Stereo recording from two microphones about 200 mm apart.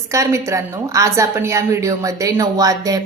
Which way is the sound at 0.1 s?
15° right (ahead or behind).